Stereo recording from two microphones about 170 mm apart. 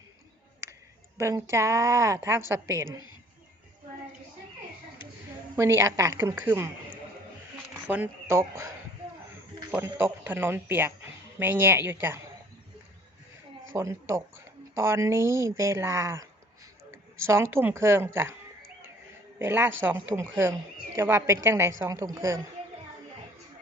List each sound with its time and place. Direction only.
1.2 s a woman's voice: 15° right (ahead or behind)
5.5 s a woman's voice: 15° right (ahead or behind)
7.7 s speech: 10° right (ahead or behind)
9.7 s a woman's voice: 10° right (ahead or behind)
13.7 s a woman's voice: 15° right (ahead or behind)
19.4 s a woman's voice: 15° right (ahead or behind)